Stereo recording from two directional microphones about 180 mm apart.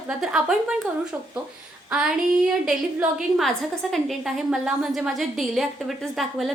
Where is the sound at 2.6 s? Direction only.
5° right (ahead or behind).